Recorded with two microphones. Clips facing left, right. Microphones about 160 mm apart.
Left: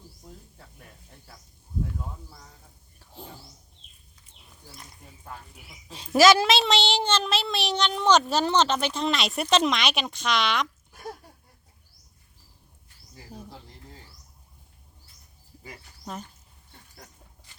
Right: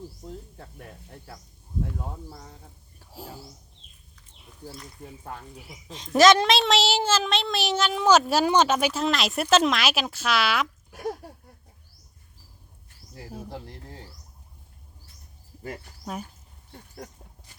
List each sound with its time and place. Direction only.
3.0 s a sound: 5° right (ahead or behind)
5.9 s a woman's voice: 5° left (ahead or behind)
13.3 s speech: 65° right (ahead or behind)